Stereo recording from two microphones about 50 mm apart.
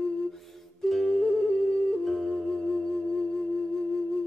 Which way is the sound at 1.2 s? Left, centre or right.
Left.